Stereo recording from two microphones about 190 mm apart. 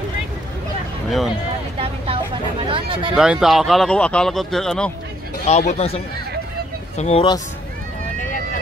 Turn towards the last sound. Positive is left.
turn(degrees=35)  # may be behind; listen again after turning